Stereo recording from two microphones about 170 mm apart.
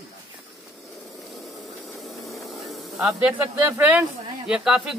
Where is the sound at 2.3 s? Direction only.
Centre (ahead or behind).